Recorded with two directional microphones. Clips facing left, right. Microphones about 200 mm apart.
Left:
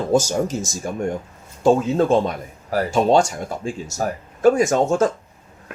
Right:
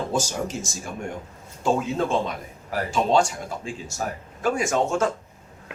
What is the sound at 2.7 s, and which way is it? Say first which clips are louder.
Speech: left 5 dB; 40° left (ahead or behind).